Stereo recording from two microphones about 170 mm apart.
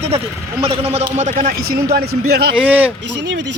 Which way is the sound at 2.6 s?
10° right (ahead or behind).